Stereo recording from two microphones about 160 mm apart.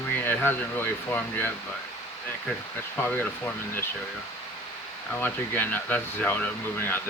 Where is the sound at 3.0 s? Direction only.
10° left (ahead or behind).